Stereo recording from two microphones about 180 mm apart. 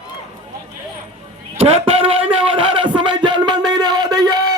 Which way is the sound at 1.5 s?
30° right (ahead or behind).